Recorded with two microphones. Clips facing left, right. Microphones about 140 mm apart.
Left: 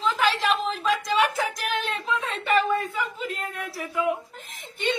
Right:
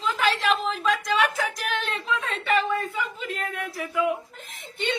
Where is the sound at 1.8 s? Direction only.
40° left (ahead or behind).